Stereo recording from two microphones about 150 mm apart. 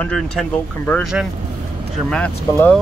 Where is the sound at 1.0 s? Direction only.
Centre (ahead or behind).